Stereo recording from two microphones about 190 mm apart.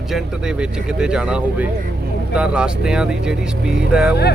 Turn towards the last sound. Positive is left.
turn(degrees=-5)  # may be behind; listen again after turning